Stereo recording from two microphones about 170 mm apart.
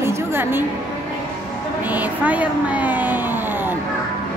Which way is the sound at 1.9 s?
10° right (ahead or behind).